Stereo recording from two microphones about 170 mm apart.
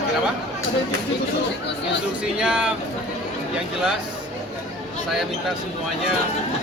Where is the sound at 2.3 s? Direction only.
5° right (ahead or behind).